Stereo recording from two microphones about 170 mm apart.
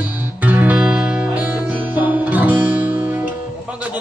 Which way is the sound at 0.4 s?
10° right (ahead or behind).